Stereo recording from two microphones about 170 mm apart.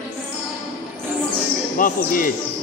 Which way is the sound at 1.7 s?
55° left (ahead or behind).